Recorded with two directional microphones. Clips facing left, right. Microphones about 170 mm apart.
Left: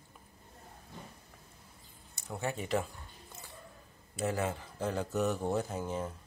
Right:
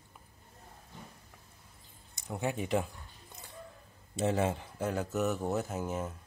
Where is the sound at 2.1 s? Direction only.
15° right (ahead or behind).